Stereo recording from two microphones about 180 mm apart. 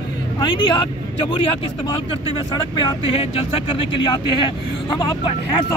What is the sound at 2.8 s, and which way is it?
Speech, 30° left (ahead or behind).